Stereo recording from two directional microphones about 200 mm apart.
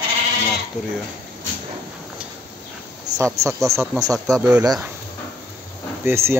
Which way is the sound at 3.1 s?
35° right (ahead or behind).